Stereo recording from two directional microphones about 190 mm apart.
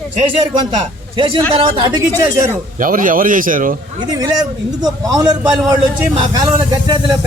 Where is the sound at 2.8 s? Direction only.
45° right (ahead or behind).